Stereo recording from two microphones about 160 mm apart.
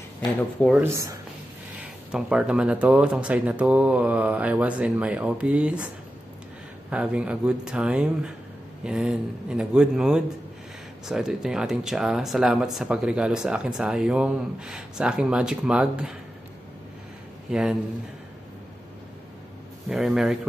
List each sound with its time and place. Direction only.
0.4 s speech: 5° left (ahead or behind)
0.8 s speech: 20° right (ahead or behind)
1.8 s speech: 5° right (ahead or behind)
6.9 s speech: 5° right (ahead or behind)
17.5 s a man's voice: 5° right (ahead or behind)
19.9 s speech: centre (ahead or behind)